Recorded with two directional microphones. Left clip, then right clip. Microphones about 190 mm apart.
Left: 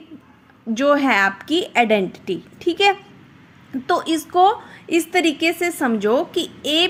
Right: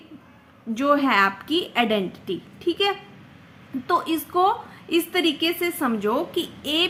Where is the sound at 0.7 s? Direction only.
25° left (ahead or behind).